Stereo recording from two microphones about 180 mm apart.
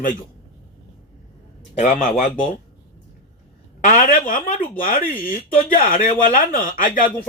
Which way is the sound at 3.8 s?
45° left (ahead or behind).